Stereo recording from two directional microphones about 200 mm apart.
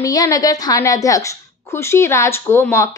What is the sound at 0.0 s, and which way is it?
A woman's voice, 20° left (ahead or behind).